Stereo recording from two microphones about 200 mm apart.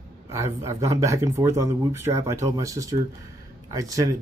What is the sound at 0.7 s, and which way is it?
Speech, 15° right (ahead or behind).